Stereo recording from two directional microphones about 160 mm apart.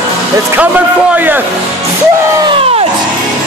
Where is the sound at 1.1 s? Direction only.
10° right (ahead or behind).